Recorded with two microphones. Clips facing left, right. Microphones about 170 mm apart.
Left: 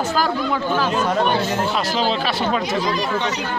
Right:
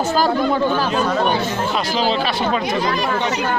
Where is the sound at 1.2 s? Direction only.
Centre (ahead or behind).